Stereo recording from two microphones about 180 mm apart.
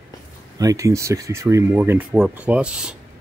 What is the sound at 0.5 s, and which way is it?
Speech, 20° right (ahead or behind).